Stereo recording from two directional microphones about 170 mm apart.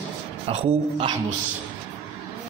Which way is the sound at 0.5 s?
35° right (ahead or behind).